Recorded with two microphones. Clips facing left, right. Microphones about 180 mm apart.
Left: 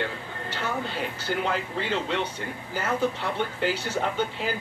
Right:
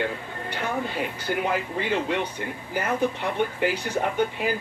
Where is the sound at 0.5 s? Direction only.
15° right (ahead or behind).